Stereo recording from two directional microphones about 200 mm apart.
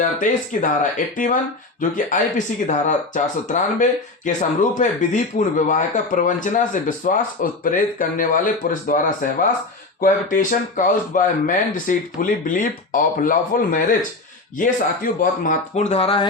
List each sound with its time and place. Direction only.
0.0 s speech: 40° left (ahead or behind)
2.6 s speech: 35° left (ahead or behind)